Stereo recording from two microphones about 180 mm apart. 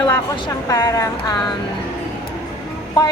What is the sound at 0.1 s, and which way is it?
Speech, 15° left (ahead or behind).